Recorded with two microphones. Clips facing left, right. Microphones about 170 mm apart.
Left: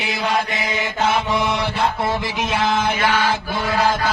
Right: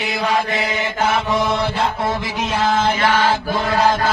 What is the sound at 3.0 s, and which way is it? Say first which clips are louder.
Mantra: right 2 dB; 50° right (ahead or behind).